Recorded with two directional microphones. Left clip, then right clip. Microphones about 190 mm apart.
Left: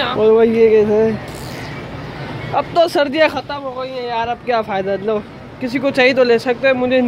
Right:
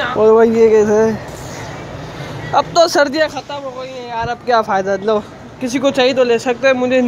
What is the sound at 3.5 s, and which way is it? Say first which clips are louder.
Speech: left 1 dB; 10° left (ahead or behind).